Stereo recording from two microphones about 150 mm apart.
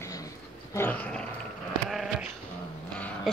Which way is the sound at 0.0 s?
25° left (ahead or behind).